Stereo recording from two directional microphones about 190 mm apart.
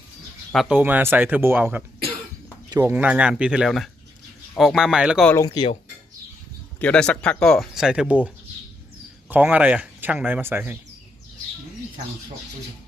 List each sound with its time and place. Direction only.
0.5 s speech: 5° right (ahead or behind)
5.2 s speech: 10° left (ahead or behind)
5.5 s speech: 25° left (ahead or behind)
6.7 s speech: 5° left (ahead or behind)
9.3 s speech: 10° right (ahead or behind)